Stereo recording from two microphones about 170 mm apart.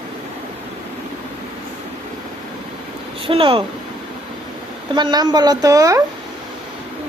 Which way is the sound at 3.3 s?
30° right (ahead or behind).